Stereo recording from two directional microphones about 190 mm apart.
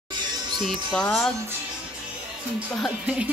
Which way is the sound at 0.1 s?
25° right (ahead or behind).